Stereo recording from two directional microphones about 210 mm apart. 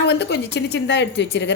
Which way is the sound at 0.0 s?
55° left (ahead or behind).